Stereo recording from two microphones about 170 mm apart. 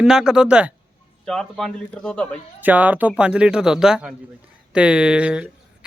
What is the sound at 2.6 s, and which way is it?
Speech, 10° right (ahead or behind).